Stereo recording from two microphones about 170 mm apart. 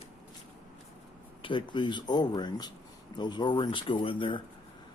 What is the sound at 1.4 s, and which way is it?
Speech, 30° left (ahead or behind).